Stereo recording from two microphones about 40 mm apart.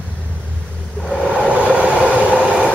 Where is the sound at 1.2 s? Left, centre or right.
Right.